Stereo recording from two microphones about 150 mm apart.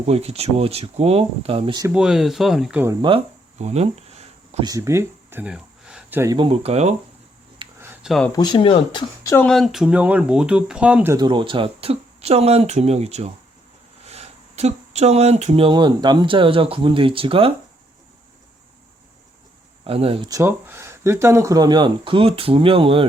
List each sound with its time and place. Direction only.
0.0 s speech: 45° right (ahead or behind)
1.9 s speech: 5° right (ahead or behind)
3.0 s speech: 35° right (ahead or behind)
4.6 s speech: 20° right (ahead or behind)
6.3 s speech: 35° right (ahead or behind)
7.6 s a sound: 35° right (ahead or behind)
8.0 s speech: centre (ahead or behind)
8.3 s speech: 30° left (ahead or behind)
9.2 s speech: 15° left (ahead or behind)
9.5 s speech: centre (ahead or behind)
11.2 s speech: 30° right (ahead or behind)
19.8 s speech: 40° right (ahead or behind)
20.2 s speech: 20° right (ahead or behind); by 23.0 s 40° right (ahead or behind)